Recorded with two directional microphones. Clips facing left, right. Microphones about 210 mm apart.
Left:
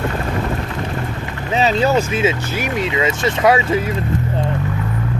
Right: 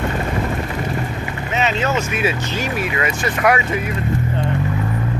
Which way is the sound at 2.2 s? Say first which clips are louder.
Left 2 dB; 20° left (ahead or behind).